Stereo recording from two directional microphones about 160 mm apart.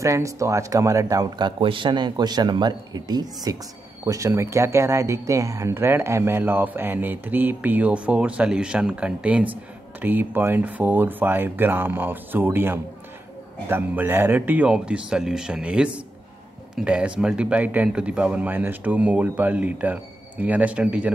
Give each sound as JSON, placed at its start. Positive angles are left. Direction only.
{"t": 0.0, "sound": "speech", "side_deg": -20}